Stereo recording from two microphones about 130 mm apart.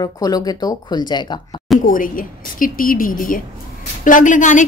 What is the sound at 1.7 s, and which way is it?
A woman's voice, 90° left.